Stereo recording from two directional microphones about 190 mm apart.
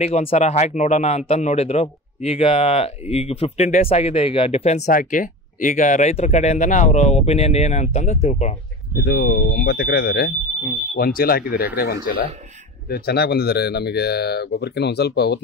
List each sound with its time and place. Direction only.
0.0 s speech: 35° left (ahead or behind)
9.0 s speech: 55° left (ahead or behind)